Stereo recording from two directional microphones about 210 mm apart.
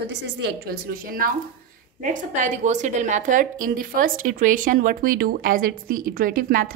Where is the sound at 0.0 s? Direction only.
55° right (ahead or behind).